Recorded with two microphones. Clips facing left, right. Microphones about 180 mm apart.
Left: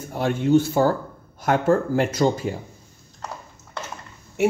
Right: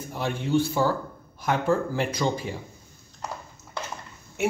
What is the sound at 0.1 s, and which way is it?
Speech, 50° left (ahead or behind).